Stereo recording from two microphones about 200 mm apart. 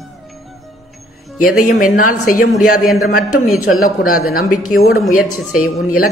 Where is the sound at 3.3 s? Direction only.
90° left.